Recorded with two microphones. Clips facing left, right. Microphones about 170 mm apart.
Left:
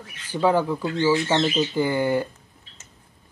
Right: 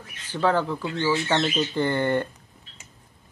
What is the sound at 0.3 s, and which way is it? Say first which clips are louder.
Speech: left 2 dB; 10° left (ahead or behind).